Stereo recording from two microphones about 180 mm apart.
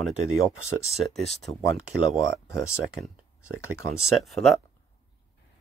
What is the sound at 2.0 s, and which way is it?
Speech, 5° right (ahead or behind).